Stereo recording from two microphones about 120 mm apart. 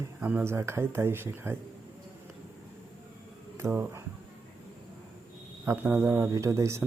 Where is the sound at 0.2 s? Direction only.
10° right (ahead or behind).